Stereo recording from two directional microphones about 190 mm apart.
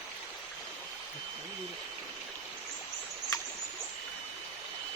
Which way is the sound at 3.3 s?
20° left (ahead or behind).